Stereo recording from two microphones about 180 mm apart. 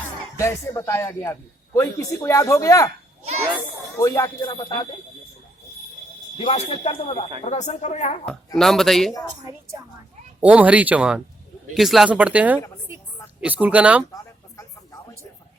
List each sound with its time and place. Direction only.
0.3 s a man's voice: 15° left (ahead or behind)
3.9 s speech: 20° left (ahead or behind)
6.4 s speech: 30° left (ahead or behind)
8.5 s speech: centre (ahead or behind)
10.4 s speech: 10° right (ahead or behind)